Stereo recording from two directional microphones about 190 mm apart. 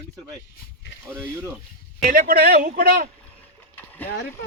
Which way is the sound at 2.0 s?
50° right (ahead or behind).